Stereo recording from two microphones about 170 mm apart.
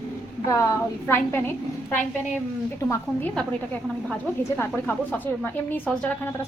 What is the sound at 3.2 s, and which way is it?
Speech, 5° left (ahead or behind).